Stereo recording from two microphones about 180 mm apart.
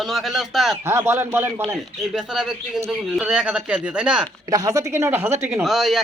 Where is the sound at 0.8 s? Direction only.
15° right (ahead or behind).